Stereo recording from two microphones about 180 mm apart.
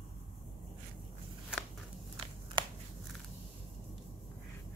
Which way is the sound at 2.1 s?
30° right (ahead or behind).